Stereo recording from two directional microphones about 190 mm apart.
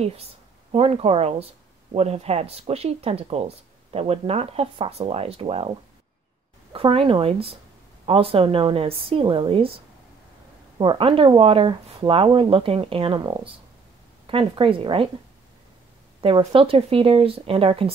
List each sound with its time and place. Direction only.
0.0 s speech: 30° right (ahead or behind)
6.7 s speech: 30° right (ahead or behind)
10.8 s speech: 25° right (ahead or behind)
16.2 s speech: 30° right (ahead or behind)